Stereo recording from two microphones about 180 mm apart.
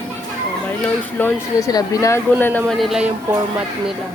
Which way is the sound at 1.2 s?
20° left (ahead or behind).